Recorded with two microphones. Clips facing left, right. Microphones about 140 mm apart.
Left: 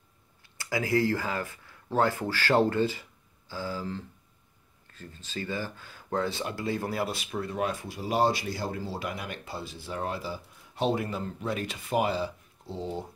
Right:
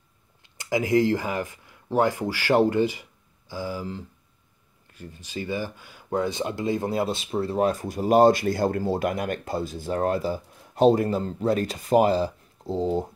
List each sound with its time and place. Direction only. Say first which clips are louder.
0.4 s speech: right 5 dB; 20° right (ahead or behind); by 13.0 s 40° right (ahead or behind)